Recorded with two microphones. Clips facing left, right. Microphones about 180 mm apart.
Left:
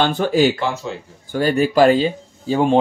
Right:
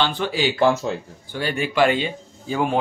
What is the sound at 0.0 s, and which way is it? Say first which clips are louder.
Speech: left 6 dB; 45° left (ahead or behind).